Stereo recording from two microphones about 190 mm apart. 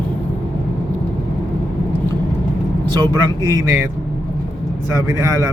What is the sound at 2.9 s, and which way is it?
Speech, 20° right (ahead or behind).